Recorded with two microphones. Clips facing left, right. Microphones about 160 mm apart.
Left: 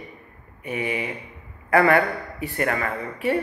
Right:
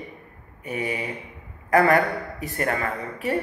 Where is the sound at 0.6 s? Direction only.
40° right (ahead or behind).